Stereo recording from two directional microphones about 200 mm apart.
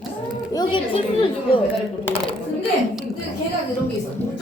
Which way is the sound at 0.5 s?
25° left (ahead or behind).